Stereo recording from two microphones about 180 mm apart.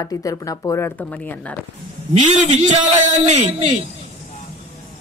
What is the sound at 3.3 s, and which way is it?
Speech, 40° right (ahead or behind).